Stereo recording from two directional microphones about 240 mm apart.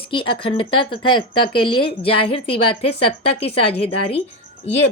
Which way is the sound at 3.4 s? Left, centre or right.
Left.